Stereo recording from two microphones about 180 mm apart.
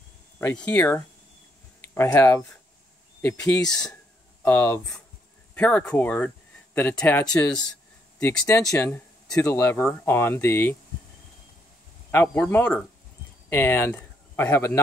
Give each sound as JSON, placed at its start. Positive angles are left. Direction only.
{"t": 0.4, "sound": "speech", "side_deg": 15}
{"t": 8.5, "sound": "speech", "side_deg": 15}
{"t": 12.1, "sound": "speech", "side_deg": 10}